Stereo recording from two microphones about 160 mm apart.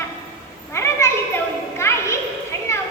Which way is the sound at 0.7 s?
15° left (ahead or behind).